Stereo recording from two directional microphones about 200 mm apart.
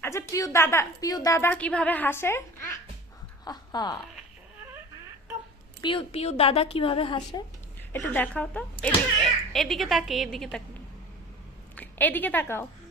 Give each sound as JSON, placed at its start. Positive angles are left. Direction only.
{"t": 0.0, "sound": "a woman's voice", "side_deg": 15}
{"t": 5.8, "sound": "a woman's voice", "side_deg": 25}
{"t": 7.8, "sound": "a woman's voice", "side_deg": 10}
{"t": 11.7, "sound": "a woman's voice", "side_deg": 10}